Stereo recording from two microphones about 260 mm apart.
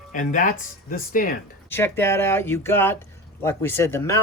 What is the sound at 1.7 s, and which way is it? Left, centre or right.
Speech, centre.